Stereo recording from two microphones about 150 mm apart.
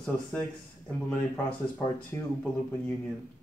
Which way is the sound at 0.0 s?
5° left (ahead or behind).